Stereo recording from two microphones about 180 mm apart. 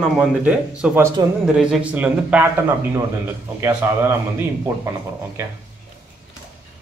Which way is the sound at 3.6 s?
15° right (ahead or behind).